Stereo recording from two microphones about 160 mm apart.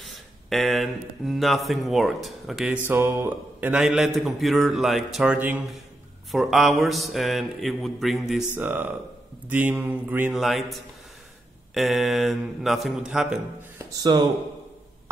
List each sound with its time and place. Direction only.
0.0 s speech: centre (ahead or behind)
10.3 s speech: centre (ahead or behind)
14.0 s speech: 20° right (ahead or behind)